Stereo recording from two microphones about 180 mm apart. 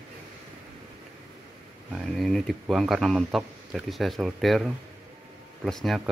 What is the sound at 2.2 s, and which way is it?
Speech, centre (ahead or behind).